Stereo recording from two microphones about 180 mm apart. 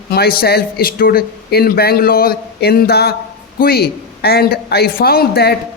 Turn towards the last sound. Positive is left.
turn(degrees=60)  # may be behind; listen again after turning